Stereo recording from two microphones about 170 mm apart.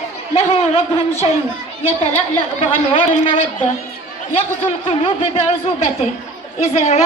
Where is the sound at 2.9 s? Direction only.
35° left (ahead or behind).